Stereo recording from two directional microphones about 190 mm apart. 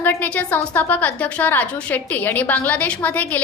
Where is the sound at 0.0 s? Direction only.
10° left (ahead or behind).